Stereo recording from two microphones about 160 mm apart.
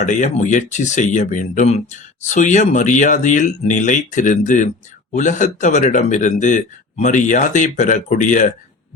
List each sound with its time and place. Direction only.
0.0 s speech: 50° left (ahead or behind)